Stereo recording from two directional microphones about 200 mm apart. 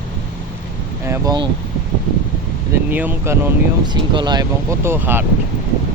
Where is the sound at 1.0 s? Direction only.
15° right (ahead or behind).